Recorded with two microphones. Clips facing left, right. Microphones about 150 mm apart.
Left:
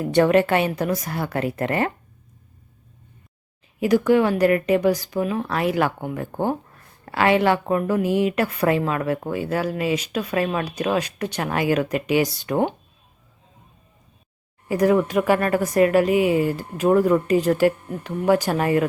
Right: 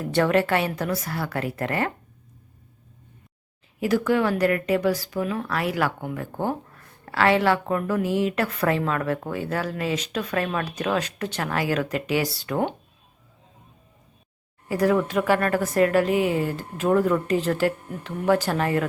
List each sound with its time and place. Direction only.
0.0 s speech: 20° left (ahead or behind)
3.8 s a woman's voice: 15° left (ahead or behind)
14.7 s a woman's voice: 20° left (ahead or behind)